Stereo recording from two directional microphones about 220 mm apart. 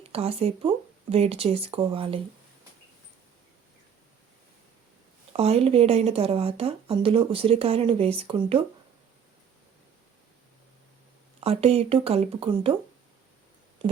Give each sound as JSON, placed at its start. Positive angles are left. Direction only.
{"t": 0.1, "sound": "a woman's voice", "side_deg": -25}
{"t": 5.4, "sound": "a woman's voice", "side_deg": -25}
{"t": 11.3, "sound": "a woman's voice", "side_deg": -25}